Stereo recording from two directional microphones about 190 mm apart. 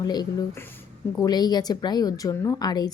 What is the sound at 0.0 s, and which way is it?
A woman's voice, 20° left (ahead or behind).